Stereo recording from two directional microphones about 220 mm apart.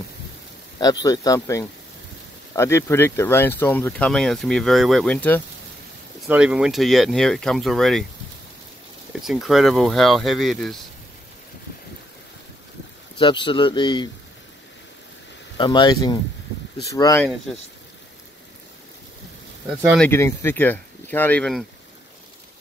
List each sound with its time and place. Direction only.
0.7 s speech: 15° left (ahead or behind)
6.2 s speech: 5° right (ahead or behind)
9.2 s speech: centre (ahead or behind)
13.2 s speech: 20° left (ahead or behind)
15.5 s speech: 20° left (ahead or behind)
20.0 s speech: 10° left (ahead or behind)